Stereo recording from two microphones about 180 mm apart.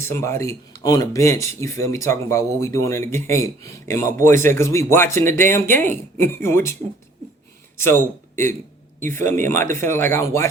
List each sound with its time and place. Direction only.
0.0 s speech: 15° left (ahead or behind)
7.8 s a man's voice: 15° left (ahead or behind)